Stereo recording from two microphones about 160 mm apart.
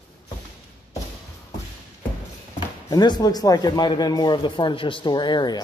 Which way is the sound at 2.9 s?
25° left (ahead or behind).